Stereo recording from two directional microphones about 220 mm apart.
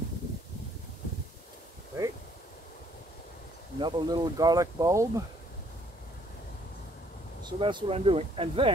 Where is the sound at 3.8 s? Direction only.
20° right (ahead or behind).